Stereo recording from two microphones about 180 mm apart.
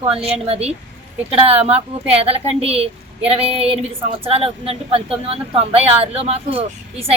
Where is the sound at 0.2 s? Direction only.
35° right (ahead or behind).